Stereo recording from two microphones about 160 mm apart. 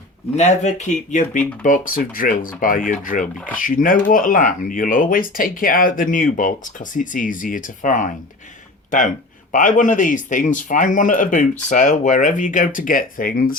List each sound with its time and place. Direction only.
0.3 s speech: 45° left (ahead or behind); by 13.6 s 60° left (ahead or behind)